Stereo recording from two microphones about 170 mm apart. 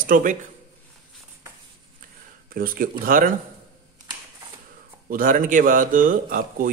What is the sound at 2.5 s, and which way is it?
Speech, 55° right (ahead or behind).